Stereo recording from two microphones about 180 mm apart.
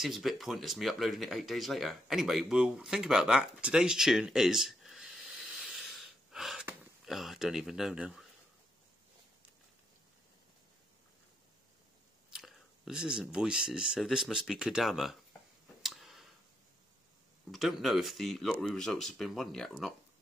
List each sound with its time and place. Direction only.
0.0 s speech: centre (ahead or behind)
12.3 s speech: centre (ahead or behind)
15.8 s a sound: centre (ahead or behind)
17.5 s speech: centre (ahead or behind)